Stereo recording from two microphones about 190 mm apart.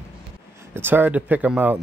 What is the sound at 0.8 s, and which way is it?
Speech, 10° right (ahead or behind).